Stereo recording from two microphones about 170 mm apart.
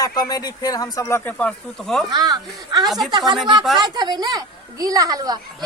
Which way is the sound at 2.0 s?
25° right (ahead or behind).